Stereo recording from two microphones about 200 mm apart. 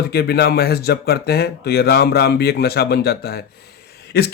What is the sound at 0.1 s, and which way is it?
Speech, 50° left (ahead or behind).